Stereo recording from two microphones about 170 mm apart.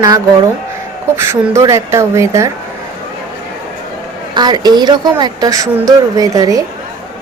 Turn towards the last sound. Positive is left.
turn(degrees=-20)  # may be behind; listen again after turning